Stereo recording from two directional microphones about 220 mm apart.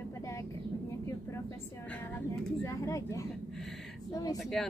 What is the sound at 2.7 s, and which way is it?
Speech, 15° left (ahead or behind).